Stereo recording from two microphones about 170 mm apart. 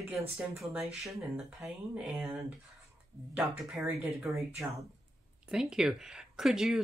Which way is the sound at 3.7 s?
15° right (ahead or behind).